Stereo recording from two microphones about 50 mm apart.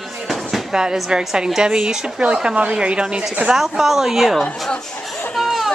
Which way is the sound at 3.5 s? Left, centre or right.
Centre.